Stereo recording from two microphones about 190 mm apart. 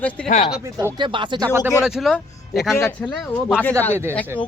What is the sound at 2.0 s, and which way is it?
Speech, centre (ahead or behind).